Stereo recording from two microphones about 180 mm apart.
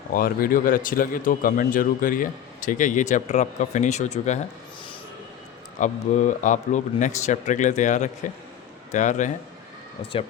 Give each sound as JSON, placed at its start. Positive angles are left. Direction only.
{"t": 0.1, "sound": "speech", "side_deg": 55}
{"t": 5.8, "sound": "speech", "side_deg": 45}
{"t": 10.0, "sound": "speech", "side_deg": 30}